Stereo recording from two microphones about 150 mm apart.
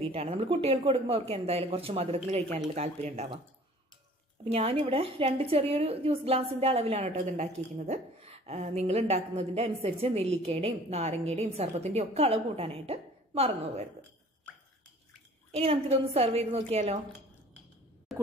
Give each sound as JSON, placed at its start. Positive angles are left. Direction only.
{"t": 0.1, "sound": "a woman's voice", "side_deg": -40}
{"t": 4.5, "sound": "a woman's voice", "side_deg": -40}
{"t": 15.5, "sound": "a woman's voice", "side_deg": -40}
{"t": 18.1, "sound": "a sound", "side_deg": 0}